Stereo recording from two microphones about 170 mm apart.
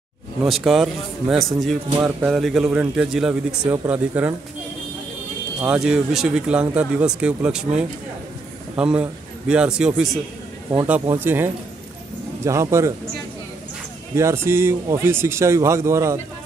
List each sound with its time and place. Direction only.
0.5 s speech: centre (ahead or behind)
5.6 s speech: 5° right (ahead or behind)
14.1 s speech: 15° right (ahead or behind)